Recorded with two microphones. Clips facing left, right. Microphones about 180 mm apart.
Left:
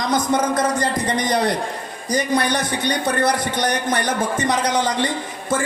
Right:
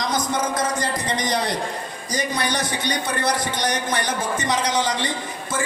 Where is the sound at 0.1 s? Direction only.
55° left (ahead or behind).